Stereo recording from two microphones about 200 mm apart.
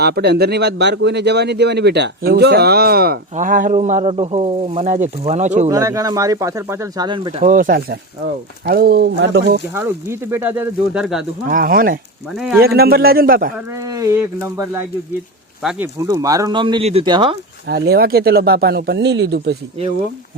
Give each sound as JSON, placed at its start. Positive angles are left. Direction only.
{"t": 0.0, "sound": "speech", "side_deg": -55}
{"t": 5.7, "sound": "speech", "side_deg": -15}
{"t": 7.4, "sound": "speech", "side_deg": -40}
{"t": 9.7, "sound": "speech", "side_deg": -10}
{"t": 11.4, "sound": "speech", "side_deg": -45}
{"t": 12.3, "sound": "speech", "side_deg": 0}
{"t": 12.5, "sound": "speech", "side_deg": -50}
{"t": 13.7, "sound": "speech", "side_deg": -15}
{"t": 15.6, "sound": "speech", "side_deg": 0}
{"t": 16.0, "sound": "speech", "side_deg": -15}
{"t": 17.7, "sound": "speech", "side_deg": -50}